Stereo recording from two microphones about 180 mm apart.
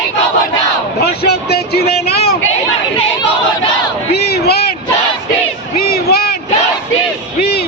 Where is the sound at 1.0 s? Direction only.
60° left (ahead or behind).